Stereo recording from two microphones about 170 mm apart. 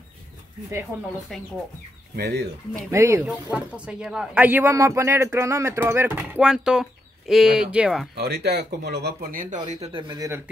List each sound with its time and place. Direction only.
1.3 s speech: centre (ahead or behind)
2.1 s speech: 65° right (ahead or behind)
2.9 s speech: 15° right (ahead or behind)
3.3 s speech: 5° right (ahead or behind)
8.2 s speech: 70° right (ahead or behind); by 9.6 s 55° right (ahead or behind)
9.6 s speech: 30° right (ahead or behind)